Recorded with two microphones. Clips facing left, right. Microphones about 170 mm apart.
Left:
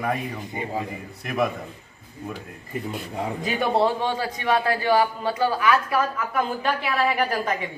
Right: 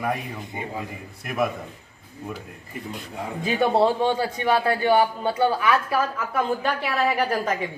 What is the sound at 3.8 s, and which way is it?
A man's voice, 30° right (ahead or behind).